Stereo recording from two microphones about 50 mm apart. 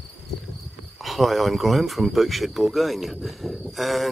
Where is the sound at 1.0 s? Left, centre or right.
Centre.